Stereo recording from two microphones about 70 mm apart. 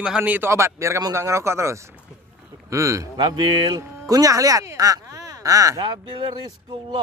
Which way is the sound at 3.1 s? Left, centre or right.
Right.